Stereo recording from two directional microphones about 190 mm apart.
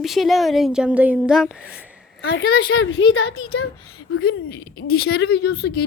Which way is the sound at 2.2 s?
70° left (ahead or behind).